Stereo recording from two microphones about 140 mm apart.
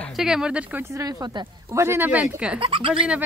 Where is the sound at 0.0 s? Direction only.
Centre (ahead or behind); by 1.8 s 30° right (ahead or behind).